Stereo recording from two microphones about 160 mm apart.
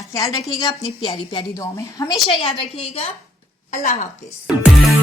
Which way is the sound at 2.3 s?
35° left (ahead or behind).